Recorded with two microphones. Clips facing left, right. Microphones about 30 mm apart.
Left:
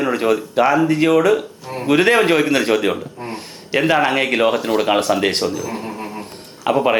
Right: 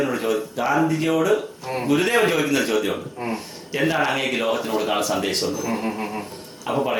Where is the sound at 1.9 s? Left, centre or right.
Left.